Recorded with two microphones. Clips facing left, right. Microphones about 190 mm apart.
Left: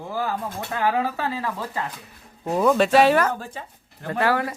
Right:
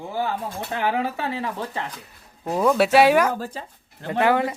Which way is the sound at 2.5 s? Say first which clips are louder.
Even; centre (ahead or behind).